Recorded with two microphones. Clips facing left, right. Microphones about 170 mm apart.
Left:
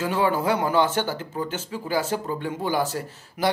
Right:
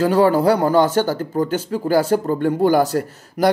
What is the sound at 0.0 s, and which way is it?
A man's voice, 35° right (ahead or behind).